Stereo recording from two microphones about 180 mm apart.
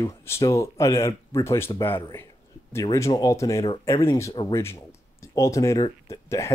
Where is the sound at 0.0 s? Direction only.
20° left (ahead or behind).